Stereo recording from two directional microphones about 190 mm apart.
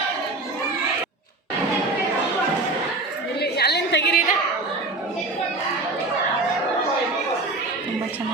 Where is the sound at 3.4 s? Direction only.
60° left (ahead or behind).